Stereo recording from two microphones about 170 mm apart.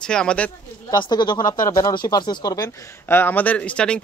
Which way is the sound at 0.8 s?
25° left (ahead or behind).